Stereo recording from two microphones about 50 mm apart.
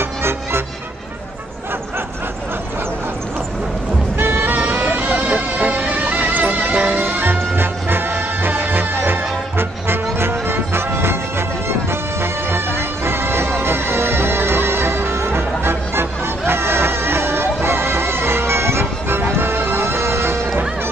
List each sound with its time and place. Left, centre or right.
0.0 s music: right
4.2 s music: right
7.0 s music: right